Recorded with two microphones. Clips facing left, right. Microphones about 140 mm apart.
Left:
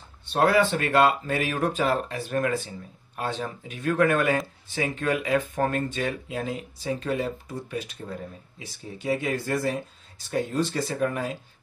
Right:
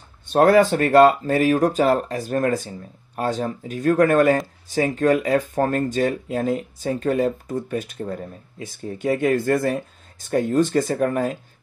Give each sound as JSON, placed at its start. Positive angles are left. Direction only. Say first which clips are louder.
{"t": 0.3, "sound": "speech", "louder": "right 6 dB", "side_deg": -45}